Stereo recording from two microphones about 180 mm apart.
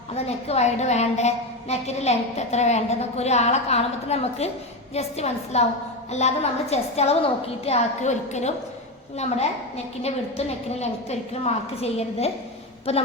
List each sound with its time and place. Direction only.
0.3 s a woman's voice: 35° left (ahead or behind)